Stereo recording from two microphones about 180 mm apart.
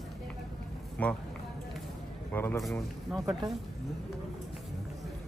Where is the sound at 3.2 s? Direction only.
20° right (ahead or behind).